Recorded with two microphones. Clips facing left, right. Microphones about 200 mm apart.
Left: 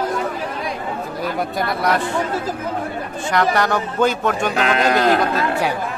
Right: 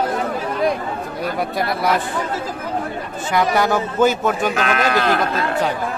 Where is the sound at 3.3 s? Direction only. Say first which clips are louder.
Right 1 dB; 5° right (ahead or behind).